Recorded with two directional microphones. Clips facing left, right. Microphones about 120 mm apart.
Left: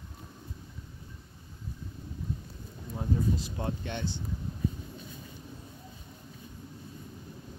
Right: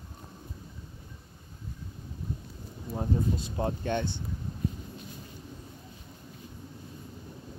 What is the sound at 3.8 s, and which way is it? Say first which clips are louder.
Speech: right 5 dB; 55° right (ahead or behind).